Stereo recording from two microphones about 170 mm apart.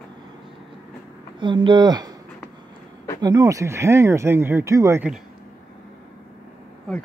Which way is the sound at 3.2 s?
20° right (ahead or behind).